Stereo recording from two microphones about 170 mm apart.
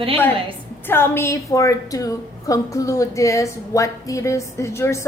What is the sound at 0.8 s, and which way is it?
A woman's voice, 15° left (ahead or behind).